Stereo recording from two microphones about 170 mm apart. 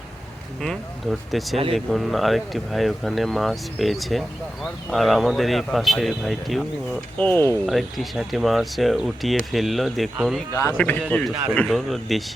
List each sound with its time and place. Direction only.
0.6 s speech: centre (ahead or behind)
7.2 s speech: 10° left (ahead or behind)
7.7 s speech: centre (ahead or behind)
10.5 s speech: 20° left (ahead or behind); by 12.2 s centre (ahead or behind)